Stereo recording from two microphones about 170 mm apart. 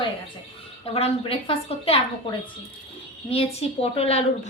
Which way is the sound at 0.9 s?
35° left (ahead or behind).